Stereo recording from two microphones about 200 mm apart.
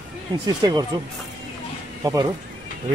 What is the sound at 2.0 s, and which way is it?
Speech, 15° right (ahead or behind).